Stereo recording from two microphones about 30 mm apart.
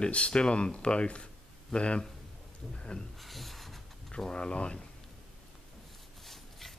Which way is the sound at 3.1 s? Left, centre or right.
Centre.